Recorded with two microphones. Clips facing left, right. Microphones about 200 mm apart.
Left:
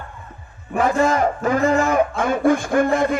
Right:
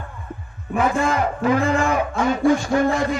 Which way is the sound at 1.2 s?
45° left (ahead or behind).